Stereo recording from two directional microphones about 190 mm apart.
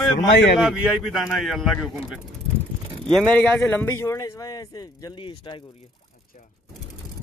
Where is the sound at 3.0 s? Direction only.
5° left (ahead or behind); by 5.5 s 20° left (ahead or behind).